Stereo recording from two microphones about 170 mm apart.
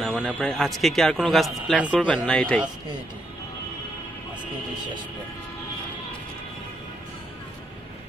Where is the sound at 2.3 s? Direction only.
5° left (ahead or behind).